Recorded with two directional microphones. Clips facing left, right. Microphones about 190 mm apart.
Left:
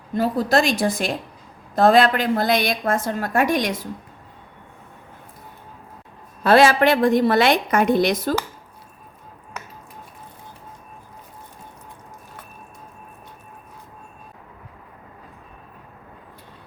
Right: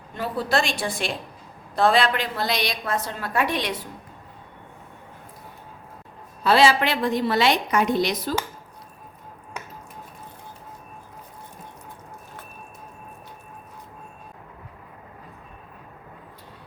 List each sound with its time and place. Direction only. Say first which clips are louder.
0.1 s a woman's voice: left 5 dB; 40° left (ahead or behind)
6.4 s a woman's voice: left 4 dB; 50° left (ahead or behind)